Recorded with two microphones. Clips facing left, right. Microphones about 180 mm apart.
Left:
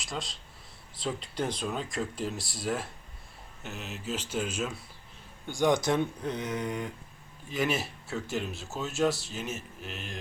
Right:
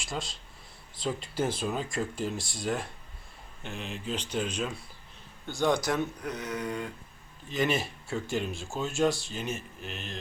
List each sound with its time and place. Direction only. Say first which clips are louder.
0.0 s speech: right 1 dB; centre (ahead or behind); by 6.9 s 20° left (ahead or behind)
7.4 s speech: right 1 dB; 5° left (ahead or behind)